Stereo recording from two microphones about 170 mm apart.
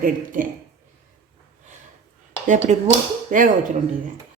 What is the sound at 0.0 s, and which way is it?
Speech, 55° right (ahead or behind).